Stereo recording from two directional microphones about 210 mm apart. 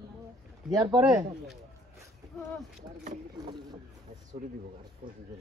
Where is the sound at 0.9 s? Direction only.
Centre (ahead or behind).